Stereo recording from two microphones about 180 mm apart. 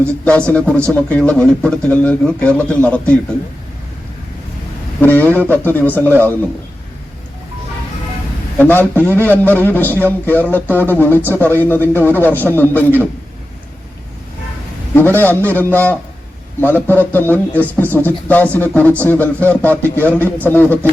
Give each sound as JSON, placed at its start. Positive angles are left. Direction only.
{"t": 0.3, "sound": "a man's voice", "side_deg": 5}
{"t": 5.0, "sound": "a man's voice", "side_deg": 10}
{"t": 8.5, "sound": "a man's voice", "side_deg": 10}
{"t": 14.9, "sound": "a man's voice", "side_deg": 10}